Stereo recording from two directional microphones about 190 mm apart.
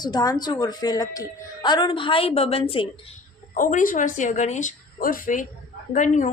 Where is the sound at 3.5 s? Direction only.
45° left (ahead or behind).